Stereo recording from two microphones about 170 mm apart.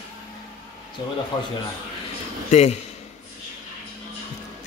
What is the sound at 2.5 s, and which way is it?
Speech, 40° left (ahead or behind).